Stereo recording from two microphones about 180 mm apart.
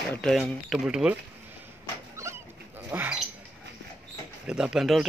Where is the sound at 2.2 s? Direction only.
15° right (ahead or behind).